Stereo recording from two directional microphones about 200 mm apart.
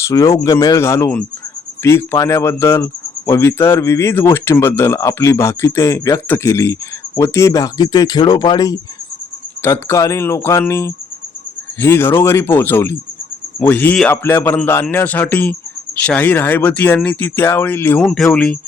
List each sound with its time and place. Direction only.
0.0 s speech: 15° left (ahead or behind)